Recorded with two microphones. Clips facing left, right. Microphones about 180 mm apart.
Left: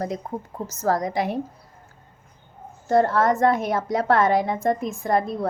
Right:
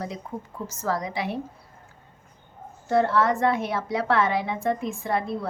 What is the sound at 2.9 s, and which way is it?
A woman's voice, 45° left (ahead or behind).